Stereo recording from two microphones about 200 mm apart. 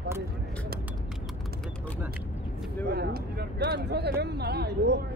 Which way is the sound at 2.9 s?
50° right (ahead or behind).